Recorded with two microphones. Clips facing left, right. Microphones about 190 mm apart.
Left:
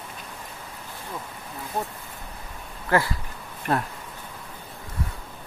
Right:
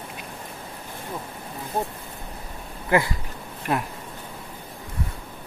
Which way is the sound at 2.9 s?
15° right (ahead or behind).